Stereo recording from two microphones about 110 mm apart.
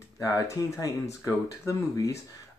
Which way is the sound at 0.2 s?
25° left (ahead or behind).